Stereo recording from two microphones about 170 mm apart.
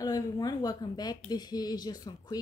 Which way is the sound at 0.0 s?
20° left (ahead or behind).